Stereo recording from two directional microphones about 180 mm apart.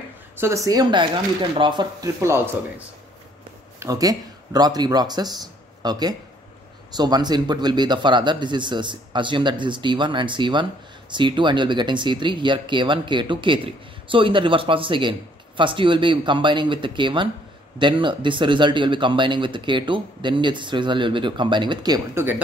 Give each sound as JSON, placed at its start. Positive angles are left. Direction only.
{"t": 0.4, "sound": "speech", "side_deg": -15}
{"t": 3.8, "sound": "speech", "side_deg": -20}